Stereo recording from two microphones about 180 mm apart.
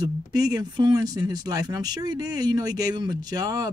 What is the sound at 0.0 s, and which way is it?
Speech, 20° right (ahead or behind).